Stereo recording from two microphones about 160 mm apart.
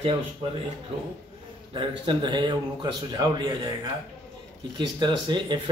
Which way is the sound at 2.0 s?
30° right (ahead or behind).